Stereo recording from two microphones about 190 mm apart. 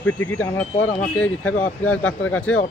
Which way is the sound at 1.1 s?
10° left (ahead or behind).